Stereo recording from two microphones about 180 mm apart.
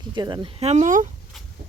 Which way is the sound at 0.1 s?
25° right (ahead or behind).